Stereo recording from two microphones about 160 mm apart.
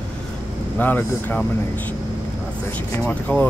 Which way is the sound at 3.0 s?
10° left (ahead or behind).